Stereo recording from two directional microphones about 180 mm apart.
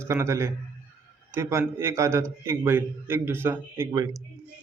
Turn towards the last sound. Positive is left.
turn(degrees=-20)  # may be behind; listen again after turning